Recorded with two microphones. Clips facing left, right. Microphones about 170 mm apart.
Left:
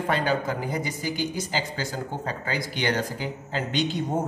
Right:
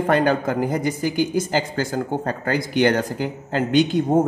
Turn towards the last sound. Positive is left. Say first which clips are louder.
# right 9 dB
turn(degrees=-50)  # may be behind; listen again after turning